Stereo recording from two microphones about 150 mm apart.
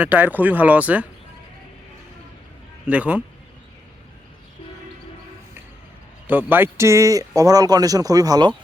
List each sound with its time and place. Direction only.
0.0 s speech: 10° right (ahead or behind)
2.8 s speech: 10° right (ahead or behind)
6.2 s speech: 10° right (ahead or behind)